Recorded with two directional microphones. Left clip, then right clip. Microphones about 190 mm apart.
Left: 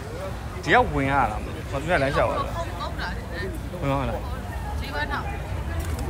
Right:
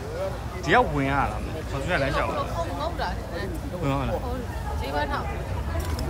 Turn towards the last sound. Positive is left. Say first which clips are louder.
# left 2 dB
turn(degrees=-15)  # may be behind; listen again after turning